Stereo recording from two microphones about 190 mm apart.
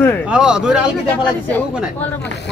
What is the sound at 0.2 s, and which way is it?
Speech, 5° right (ahead or behind).